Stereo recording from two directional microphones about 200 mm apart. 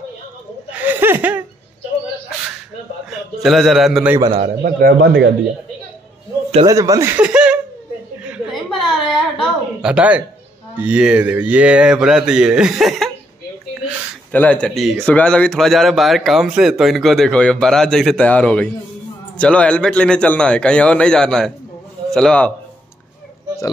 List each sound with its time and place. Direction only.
0.7 s chuckle: 10° right (ahead or behind)
3.1 s a man's voice: centre (ahead or behind)
4.6 s speech: 50° right (ahead or behind)
6.6 s speech: 15° right (ahead or behind)
8.3 s a sound: centre (ahead or behind)
10.8 s speech: 5° right (ahead or behind)
14.3 s speech: 5° left (ahead or behind)